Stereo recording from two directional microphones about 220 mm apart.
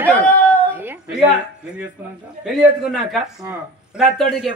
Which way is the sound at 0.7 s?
10° right (ahead or behind).